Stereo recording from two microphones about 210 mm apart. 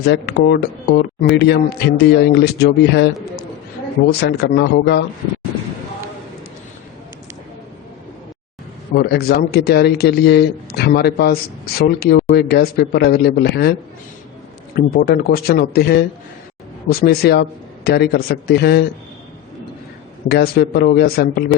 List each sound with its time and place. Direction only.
0.0 s speech: 55° left (ahead or behind)
4.2 s speech: 50° left (ahead or behind)
9.0 s speech: 50° left (ahead or behind)
14.8 s speech: 45° left (ahead or behind)
20.2 s speech: 50° left (ahead or behind)